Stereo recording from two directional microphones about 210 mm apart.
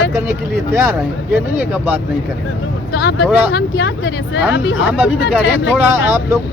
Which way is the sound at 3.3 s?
10° right (ahead or behind).